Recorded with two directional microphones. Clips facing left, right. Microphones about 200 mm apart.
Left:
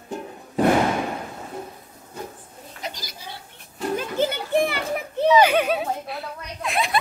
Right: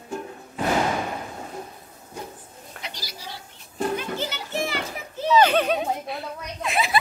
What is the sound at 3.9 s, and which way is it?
Children playing, 50° left (ahead or behind).